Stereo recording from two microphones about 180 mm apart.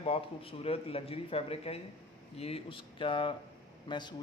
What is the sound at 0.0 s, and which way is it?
A man's voice, 30° left (ahead or behind).